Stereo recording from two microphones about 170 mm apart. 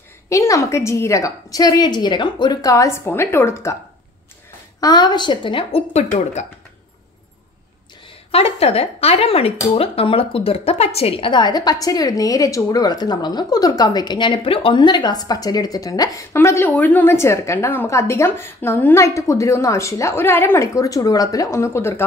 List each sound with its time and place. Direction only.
0.3 s a woman's voice: 20° left (ahead or behind)
4.7 s a woman's voice: 25° left (ahead or behind); by 6.4 s 40° left (ahead or behind)
8.3 s a woman's voice: 35° left (ahead or behind); by 22.0 s 15° left (ahead or behind)